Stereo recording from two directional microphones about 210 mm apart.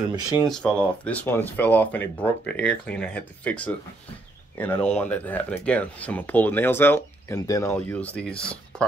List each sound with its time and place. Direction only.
0.1 s speech: 15° right (ahead or behind)
0.5 s speech: 5° left (ahead or behind)